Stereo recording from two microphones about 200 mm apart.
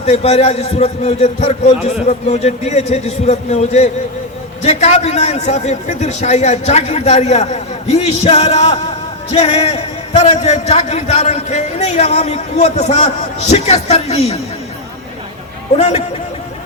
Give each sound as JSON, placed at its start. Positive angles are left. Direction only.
{"t": 0.0, "sound": "a man's voice", "side_deg": 30}
{"t": 15.8, "sound": "a man's voice", "side_deg": 30}